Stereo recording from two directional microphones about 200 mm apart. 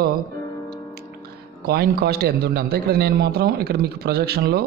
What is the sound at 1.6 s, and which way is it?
A man's voice, 50° right (ahead or behind).